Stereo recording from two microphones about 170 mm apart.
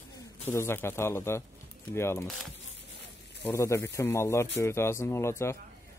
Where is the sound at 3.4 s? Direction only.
15° left (ahead or behind).